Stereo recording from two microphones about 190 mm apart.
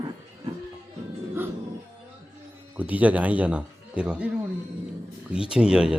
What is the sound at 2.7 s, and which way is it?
Speech, 10° right (ahead or behind).